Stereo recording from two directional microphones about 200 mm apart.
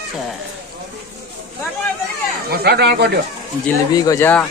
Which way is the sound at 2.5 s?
50° right (ahead or behind).